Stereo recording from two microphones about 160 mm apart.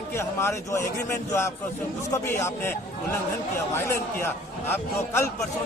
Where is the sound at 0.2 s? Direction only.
15° left (ahead or behind).